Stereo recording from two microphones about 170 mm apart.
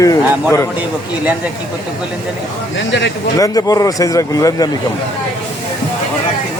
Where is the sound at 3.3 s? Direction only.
20° left (ahead or behind).